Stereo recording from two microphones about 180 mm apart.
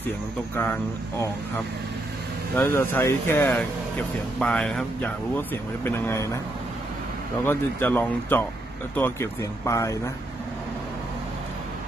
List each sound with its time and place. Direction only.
2.5 s speech: 10° left (ahead or behind)
7.4 s speech: 10° left (ahead or behind)